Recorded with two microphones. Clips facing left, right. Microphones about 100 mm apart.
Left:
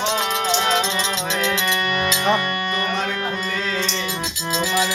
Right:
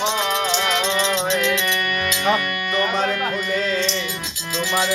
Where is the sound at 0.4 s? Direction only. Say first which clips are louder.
Left 1 dB; 30° left (ahead or behind).